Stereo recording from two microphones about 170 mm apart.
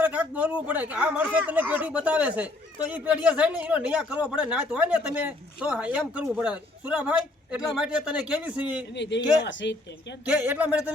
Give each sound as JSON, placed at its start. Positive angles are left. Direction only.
{"t": 0.0, "sound": "speech", "side_deg": -10}
{"t": 8.9, "sound": "a woman's voice", "side_deg": 90}
{"t": 10.2, "sound": "speech", "side_deg": -10}